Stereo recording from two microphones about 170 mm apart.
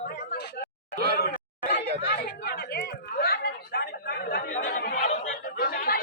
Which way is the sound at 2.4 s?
70° left (ahead or behind).